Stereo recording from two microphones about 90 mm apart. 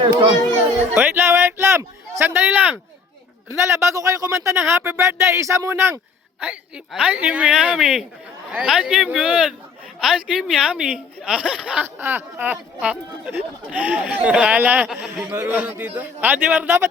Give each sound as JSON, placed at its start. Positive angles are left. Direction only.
{"t": 0.0, "sound": "a child's voice", "side_deg": -70}
{"t": 0.9, "sound": "a man's voice", "side_deg": -25}
{"t": 3.6, "sound": "speech", "side_deg": -30}
{"t": 6.4, "sound": "speech", "side_deg": -15}
{"t": 11.9, "sound": "a man's voice", "side_deg": -25}
{"t": 14.8, "sound": "a man's voice", "side_deg": 0}
{"t": 15.2, "sound": "a man's voice", "side_deg": -20}